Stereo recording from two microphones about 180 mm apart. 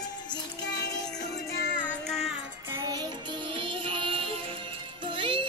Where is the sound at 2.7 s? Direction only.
20° right (ahead or behind).